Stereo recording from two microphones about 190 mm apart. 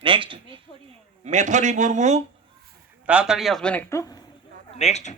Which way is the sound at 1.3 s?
40° right (ahead or behind).